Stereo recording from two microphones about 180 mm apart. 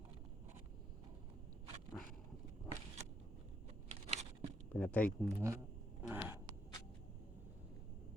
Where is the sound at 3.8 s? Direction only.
35° right (ahead or behind).